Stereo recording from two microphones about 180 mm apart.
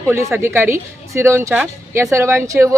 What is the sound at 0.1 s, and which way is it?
A woman's voice, 15° right (ahead or behind).